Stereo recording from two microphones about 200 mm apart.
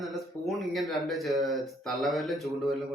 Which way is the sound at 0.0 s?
Centre (ahead or behind).